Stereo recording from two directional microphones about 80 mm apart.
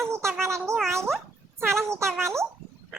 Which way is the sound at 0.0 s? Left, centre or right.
Right.